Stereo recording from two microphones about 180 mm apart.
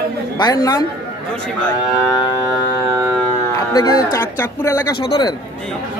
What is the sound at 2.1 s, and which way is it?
Speech, 20° left (ahead or behind).